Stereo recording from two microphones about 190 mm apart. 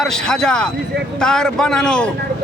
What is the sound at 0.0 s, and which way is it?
A man's voice, 5° left (ahead or behind).